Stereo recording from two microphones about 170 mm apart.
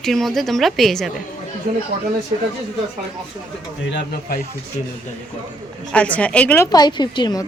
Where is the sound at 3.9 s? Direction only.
60° left (ahead or behind).